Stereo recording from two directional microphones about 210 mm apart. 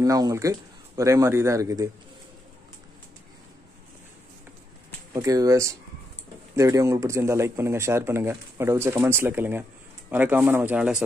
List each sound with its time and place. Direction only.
0.0 s speech: 15° right (ahead or behind)
5.1 s speech: 15° right (ahead or behind)